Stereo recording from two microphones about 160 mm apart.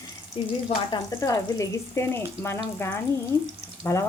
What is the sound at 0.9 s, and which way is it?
Speech, 20° left (ahead or behind).